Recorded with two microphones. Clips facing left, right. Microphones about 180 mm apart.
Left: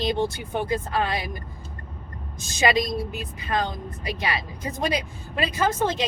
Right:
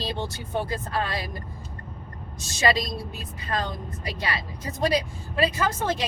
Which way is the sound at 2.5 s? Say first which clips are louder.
Left 2 dB; 20° left (ahead or behind).